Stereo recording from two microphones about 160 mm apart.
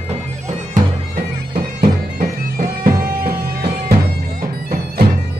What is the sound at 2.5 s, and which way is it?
Bagpipes, 60° right (ahead or behind).